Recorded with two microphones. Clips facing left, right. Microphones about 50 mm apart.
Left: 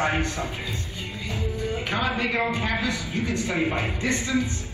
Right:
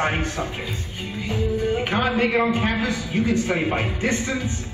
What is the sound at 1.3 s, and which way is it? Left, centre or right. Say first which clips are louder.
Music: right 7 dB; right.